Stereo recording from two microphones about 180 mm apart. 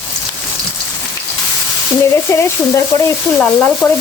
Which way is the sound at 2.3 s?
15° left (ahead or behind).